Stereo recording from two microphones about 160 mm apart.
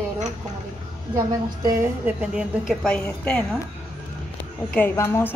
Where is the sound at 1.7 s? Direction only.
10° right (ahead or behind).